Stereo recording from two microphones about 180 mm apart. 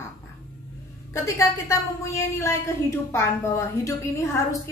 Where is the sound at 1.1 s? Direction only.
15° left (ahead or behind).